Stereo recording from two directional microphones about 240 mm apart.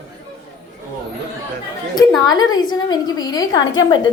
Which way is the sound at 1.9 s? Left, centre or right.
Centre.